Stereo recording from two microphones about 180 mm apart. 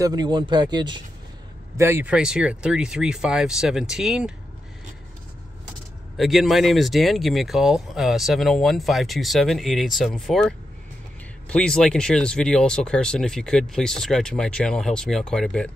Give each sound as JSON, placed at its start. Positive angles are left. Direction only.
{"t": 0.0, "sound": "speech", "side_deg": -20}
{"t": 1.8, "sound": "speech", "side_deg": -15}
{"t": 6.1, "sound": "speech", "side_deg": 0}